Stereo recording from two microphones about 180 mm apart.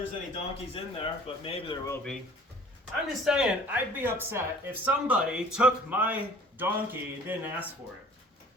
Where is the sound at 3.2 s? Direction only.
5° right (ahead or behind).